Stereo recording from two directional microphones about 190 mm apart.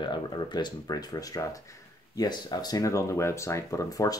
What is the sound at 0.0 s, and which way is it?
Speech, 25° left (ahead or behind).